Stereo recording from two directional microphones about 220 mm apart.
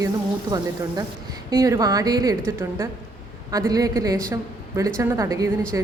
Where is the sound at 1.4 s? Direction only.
15° right (ahead or behind).